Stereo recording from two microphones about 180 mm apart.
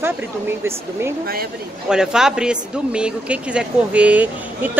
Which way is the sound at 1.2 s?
55° right (ahead or behind).